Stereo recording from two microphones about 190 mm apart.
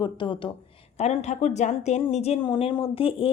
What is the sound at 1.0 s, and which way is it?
A woman's voice, 35° left (ahead or behind).